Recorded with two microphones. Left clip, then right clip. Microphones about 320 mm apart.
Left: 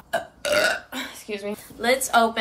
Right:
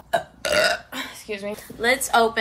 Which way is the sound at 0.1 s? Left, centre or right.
Centre.